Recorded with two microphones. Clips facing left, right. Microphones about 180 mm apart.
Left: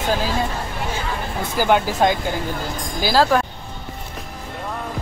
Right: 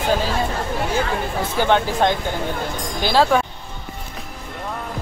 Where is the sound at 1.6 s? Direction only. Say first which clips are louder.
Left 1 dB; 5° left (ahead or behind).